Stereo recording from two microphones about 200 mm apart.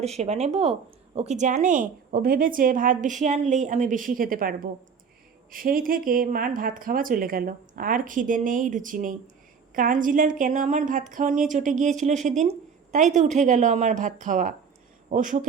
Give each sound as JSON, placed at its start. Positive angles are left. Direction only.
{"t": 0.0, "sound": "a woman's voice", "side_deg": -35}